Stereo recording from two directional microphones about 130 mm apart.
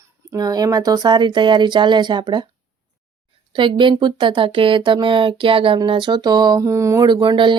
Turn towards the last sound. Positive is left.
turn(degrees=-40)  # may be behind; listen again after turning